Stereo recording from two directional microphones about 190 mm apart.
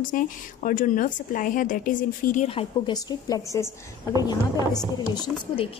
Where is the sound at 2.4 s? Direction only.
25° left (ahead or behind).